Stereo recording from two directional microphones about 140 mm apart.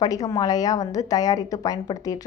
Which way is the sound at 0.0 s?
25° left (ahead or behind).